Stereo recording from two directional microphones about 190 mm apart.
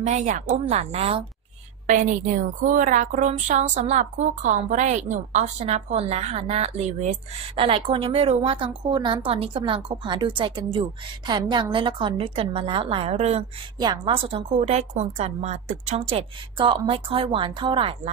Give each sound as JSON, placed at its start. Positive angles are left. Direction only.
{"t": 0.0, "sound": "a woman's voice", "side_deg": -40}
{"t": 13.7, "sound": "a woman's voice", "side_deg": -20}